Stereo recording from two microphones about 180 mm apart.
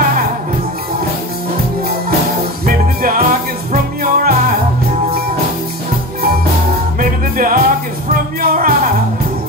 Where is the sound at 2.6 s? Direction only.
55° right (ahead or behind).